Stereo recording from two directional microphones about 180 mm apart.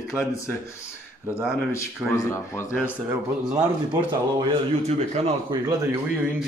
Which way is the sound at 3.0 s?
15° right (ahead or behind).